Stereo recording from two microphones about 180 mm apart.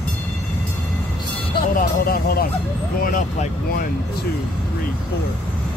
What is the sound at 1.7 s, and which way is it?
Speech, 55° left (ahead or behind).